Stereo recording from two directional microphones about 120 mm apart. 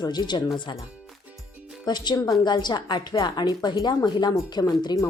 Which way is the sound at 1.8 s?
35° left (ahead or behind).